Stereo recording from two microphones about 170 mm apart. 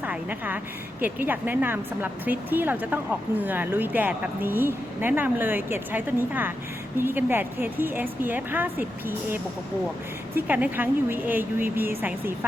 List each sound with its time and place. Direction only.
0.0 s a woman's voice: 10° right (ahead or behind)